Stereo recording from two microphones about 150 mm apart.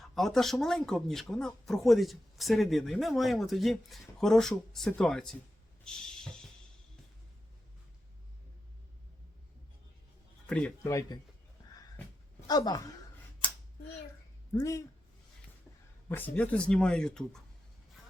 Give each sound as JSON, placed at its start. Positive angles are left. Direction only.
{"t": 0.0, "sound": "speech", "side_deg": 0}
{"t": 5.8, "sound": "a sound", "side_deg": 5}
{"t": 10.4, "sound": "speech", "side_deg": 5}
{"t": 10.8, "sound": "a woman's voice", "side_deg": 20}
{"t": 12.5, "sound": "a woman's voice", "side_deg": 25}
{"t": 13.4, "sound": "a sound", "side_deg": 35}
{"t": 14.5, "sound": "a woman's voice", "side_deg": 20}
{"t": 16.0, "sound": "speech", "side_deg": 10}